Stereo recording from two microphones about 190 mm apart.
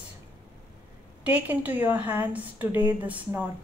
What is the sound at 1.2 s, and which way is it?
A woman's voice, 5° right (ahead or behind).